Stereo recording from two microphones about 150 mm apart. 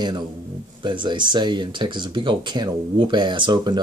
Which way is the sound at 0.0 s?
30° right (ahead or behind).